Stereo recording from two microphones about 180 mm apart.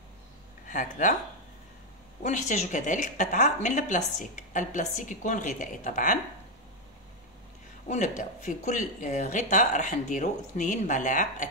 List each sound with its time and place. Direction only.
0.7 s speech: 45° left (ahead or behind)
2.2 s a woman's voice: 40° left (ahead or behind)
7.9 s a woman's voice: 40° left (ahead or behind)